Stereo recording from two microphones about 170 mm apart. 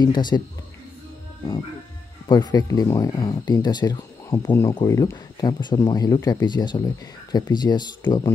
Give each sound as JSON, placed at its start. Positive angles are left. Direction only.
{"t": 0.0, "sound": "speech", "side_deg": 25}
{"t": 2.2, "sound": "speech", "side_deg": 25}